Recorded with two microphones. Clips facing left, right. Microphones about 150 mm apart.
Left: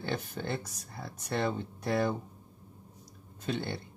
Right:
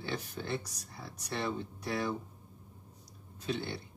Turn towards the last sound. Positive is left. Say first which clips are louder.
# left 2 dB
turn(degrees=50)  # may be behind; listen again after turning